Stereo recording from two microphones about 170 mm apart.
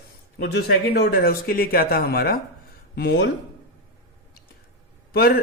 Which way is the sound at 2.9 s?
75° left (ahead or behind).